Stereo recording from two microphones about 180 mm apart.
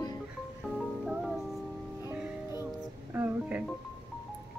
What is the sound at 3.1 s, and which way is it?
Music, 10° right (ahead or behind).